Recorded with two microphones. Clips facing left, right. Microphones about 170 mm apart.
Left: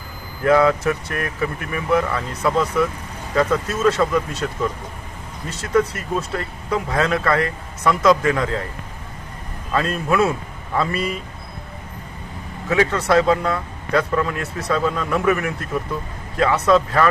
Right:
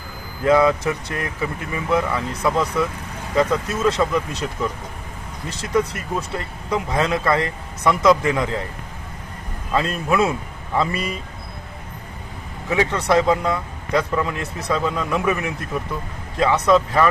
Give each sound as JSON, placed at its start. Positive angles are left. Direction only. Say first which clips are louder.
{"t": 0.4, "sound": "speech", "louder": "even", "side_deg": -15}
{"t": 5.6, "sound": "speech", "louder": "left 2 dB", "side_deg": -15}
{"t": 9.7, "sound": "speech", "louder": "even", "side_deg": -15}
{"t": 12.6, "sound": "speech", "louder": "left 1 dB", "side_deg": -15}